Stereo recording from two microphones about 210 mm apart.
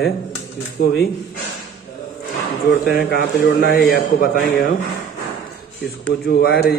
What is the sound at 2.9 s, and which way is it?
Speech, 45° left (ahead or behind).